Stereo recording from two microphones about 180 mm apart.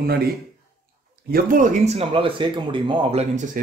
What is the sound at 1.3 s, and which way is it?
Speech, 45° right (ahead or behind).